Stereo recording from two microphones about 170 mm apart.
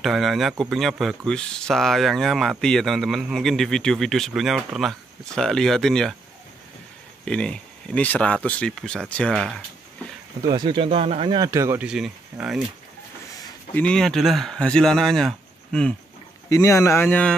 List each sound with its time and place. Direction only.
0.0 s speech: centre (ahead or behind)
7.2 s speech: 5° left (ahead or behind)
10.4 s speech: 25° right (ahead or behind)
11.9 s speech: 5° right (ahead or behind)
13.7 s speech: 5° left (ahead or behind)
16.4 s speech: 20° left (ahead or behind)